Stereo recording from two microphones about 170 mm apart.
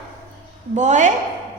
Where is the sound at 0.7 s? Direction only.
45° right (ahead or behind).